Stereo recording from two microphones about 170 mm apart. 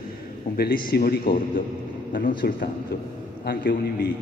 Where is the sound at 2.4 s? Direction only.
65° left (ahead or behind).